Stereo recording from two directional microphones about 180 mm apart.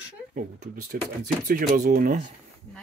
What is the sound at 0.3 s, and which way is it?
Speech, 50° right (ahead or behind).